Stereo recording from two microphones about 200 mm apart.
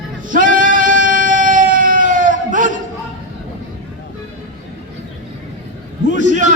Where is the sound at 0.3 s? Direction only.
40° right (ahead or behind).